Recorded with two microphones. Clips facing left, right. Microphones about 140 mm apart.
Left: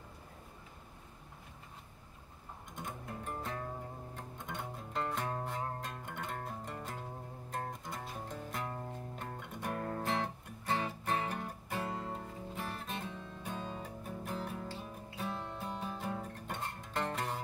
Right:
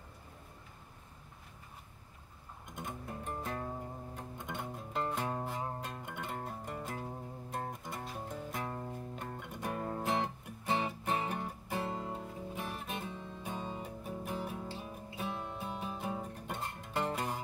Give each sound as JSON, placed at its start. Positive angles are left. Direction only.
{"t": 4.5, "sound": "music", "side_deg": -5}
{"t": 10.6, "sound": "music", "side_deg": -15}
{"t": 12.1, "sound": "music", "side_deg": -5}